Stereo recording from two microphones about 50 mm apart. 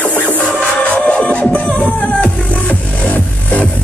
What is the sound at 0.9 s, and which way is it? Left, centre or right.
Music, left.